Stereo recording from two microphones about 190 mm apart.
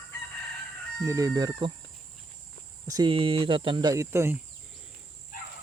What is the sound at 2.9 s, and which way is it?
Speech, 25° right (ahead or behind).